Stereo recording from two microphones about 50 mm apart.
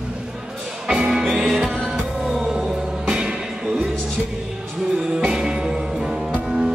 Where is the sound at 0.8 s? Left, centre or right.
Centre.